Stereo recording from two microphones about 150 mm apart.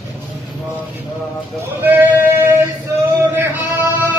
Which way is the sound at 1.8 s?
15° right (ahead or behind).